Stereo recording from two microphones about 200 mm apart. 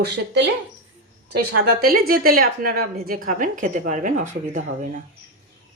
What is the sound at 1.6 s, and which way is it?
A woman's voice, 50° right (ahead or behind).